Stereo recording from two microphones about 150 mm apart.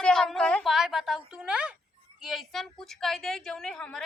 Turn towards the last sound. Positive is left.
turn(degrees=5)  # may be behind; listen again after turning